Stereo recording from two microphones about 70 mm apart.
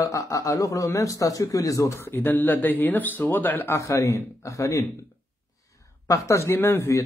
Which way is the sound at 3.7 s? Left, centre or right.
Left.